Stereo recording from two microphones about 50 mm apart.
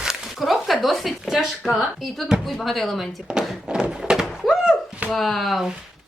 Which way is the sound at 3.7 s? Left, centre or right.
Centre.